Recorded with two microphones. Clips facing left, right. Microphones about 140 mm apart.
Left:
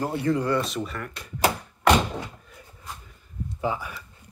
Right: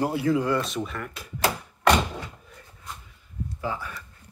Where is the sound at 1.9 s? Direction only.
Centre (ahead or behind).